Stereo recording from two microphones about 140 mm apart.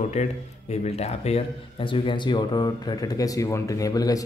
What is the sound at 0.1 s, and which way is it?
Speech, 50° left (ahead or behind).